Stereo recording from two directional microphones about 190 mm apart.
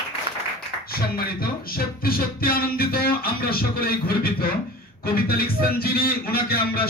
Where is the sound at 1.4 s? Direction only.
50° left (ahead or behind).